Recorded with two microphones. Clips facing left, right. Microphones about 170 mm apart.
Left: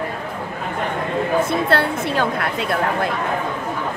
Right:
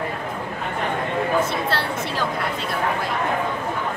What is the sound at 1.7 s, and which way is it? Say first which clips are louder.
Speech: left 6 dB; 55° left (ahead or behind).